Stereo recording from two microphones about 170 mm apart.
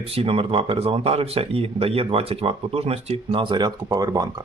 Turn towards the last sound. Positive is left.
turn(degrees=-20)  # may be behind; listen again after turning